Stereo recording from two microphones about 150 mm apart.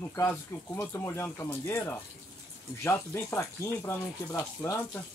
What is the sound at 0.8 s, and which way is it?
Speech, 15° left (ahead or behind).